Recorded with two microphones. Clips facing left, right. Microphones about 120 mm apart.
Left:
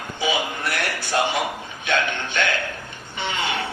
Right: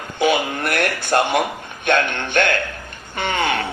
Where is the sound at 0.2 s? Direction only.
60° right (ahead or behind).